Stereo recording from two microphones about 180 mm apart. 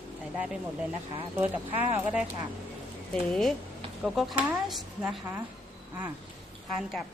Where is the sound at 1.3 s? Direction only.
10° right (ahead or behind).